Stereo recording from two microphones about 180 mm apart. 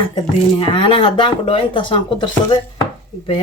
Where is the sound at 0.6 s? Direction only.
30° left (ahead or behind).